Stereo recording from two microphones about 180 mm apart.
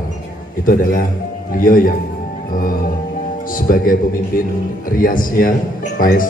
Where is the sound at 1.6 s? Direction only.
50° left (ahead or behind).